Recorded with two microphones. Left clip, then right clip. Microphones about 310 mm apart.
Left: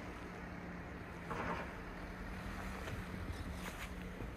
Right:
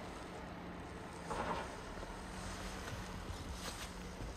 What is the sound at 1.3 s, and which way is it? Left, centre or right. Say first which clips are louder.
Vehicle: right 1 dB; right.